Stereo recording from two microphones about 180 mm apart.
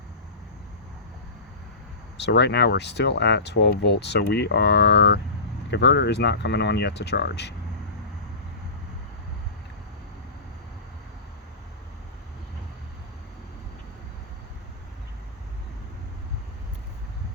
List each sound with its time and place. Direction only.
2.1 s speech: 70° left (ahead or behind)